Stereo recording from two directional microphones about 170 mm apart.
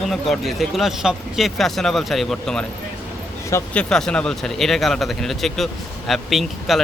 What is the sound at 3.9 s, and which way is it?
Speech, 5° left (ahead or behind).